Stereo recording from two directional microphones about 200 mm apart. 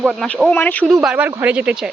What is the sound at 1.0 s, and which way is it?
Speech, 5° right (ahead or behind).